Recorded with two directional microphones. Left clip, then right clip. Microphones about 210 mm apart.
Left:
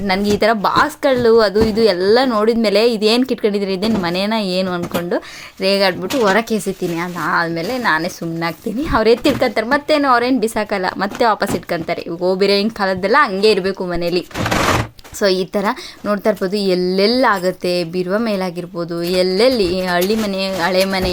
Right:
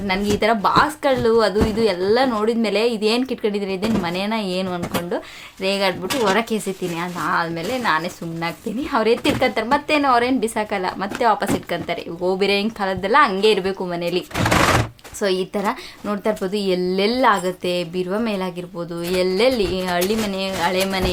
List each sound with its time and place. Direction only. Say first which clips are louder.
0.1 s speech: left 4 dB; 30° left (ahead or behind)